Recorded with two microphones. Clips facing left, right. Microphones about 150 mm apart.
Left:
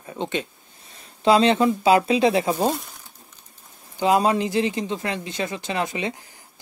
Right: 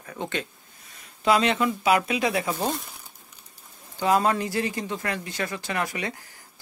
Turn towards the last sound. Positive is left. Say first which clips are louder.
# left 4 dB
turn(degrees=20)  # may be behind; listen again after turning